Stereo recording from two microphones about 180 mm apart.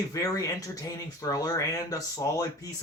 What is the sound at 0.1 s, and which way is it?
Speech, 20° left (ahead or behind).